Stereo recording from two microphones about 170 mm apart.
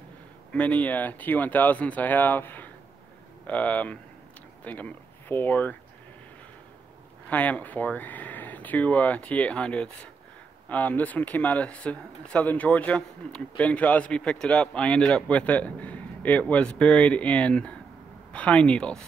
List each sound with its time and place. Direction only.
0.5 s speech: 10° left (ahead or behind)
7.2 s speech: 10° left (ahead or behind)